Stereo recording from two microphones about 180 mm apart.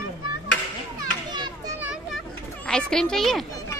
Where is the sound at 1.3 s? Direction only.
25° right (ahead or behind).